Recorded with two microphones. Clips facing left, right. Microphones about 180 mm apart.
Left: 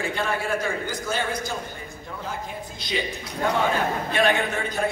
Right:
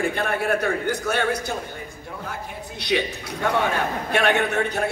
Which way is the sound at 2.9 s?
65° right (ahead or behind).